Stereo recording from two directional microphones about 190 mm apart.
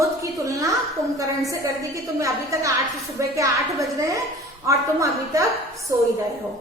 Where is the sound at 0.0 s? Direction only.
15° right (ahead or behind).